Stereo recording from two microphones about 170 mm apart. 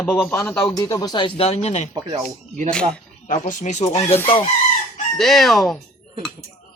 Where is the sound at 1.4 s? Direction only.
35° left (ahead or behind).